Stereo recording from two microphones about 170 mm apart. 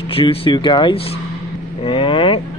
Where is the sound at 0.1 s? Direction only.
35° left (ahead or behind).